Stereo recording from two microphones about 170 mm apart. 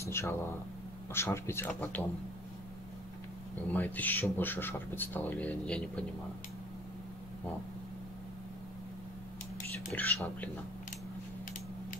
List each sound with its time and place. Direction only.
0.0 s speech: 15° left (ahead or behind)
3.7 s speech: 10° left (ahead or behind)
9.9 s speech: 10° left (ahead or behind)